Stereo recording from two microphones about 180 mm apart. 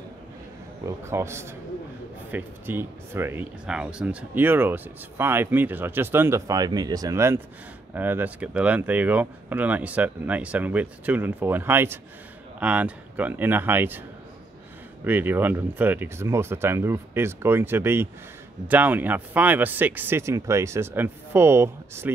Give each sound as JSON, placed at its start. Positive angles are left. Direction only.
{"t": 0.8, "sound": "speech", "side_deg": -15}
{"t": 15.0, "sound": "speech", "side_deg": -10}